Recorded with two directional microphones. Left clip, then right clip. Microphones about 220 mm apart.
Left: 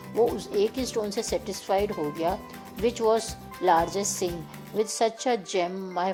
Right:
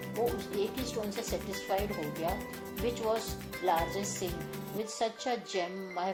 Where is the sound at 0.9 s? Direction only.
45° left (ahead or behind).